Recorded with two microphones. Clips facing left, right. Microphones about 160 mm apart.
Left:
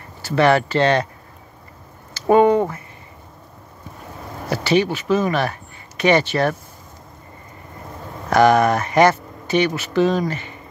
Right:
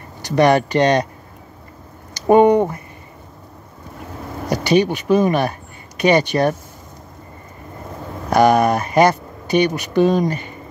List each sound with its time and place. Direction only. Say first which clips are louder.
0.2 s speech: right 2 dB; 15° right (ahead or behind)
2.1 s speech: right 2 dB; 15° right (ahead or behind)
4.5 s speech: right 2 dB; 15° right (ahead or behind)
8.3 s speech: right 1 dB; 15° right (ahead or behind)